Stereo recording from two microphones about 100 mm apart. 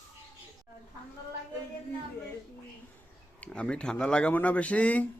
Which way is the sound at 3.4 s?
10° left (ahead or behind).